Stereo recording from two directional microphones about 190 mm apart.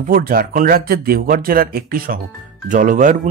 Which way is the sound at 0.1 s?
50° right (ahead or behind).